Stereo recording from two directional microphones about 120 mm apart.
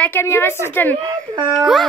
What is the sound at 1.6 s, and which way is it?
Speech, centre (ahead or behind).